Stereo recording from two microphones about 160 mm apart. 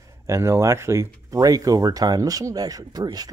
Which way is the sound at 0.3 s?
15° right (ahead or behind).